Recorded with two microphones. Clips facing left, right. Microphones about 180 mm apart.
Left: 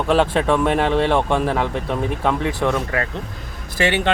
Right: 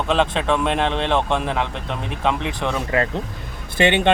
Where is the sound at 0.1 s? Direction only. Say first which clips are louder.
Left 3 dB; 10° left (ahead or behind).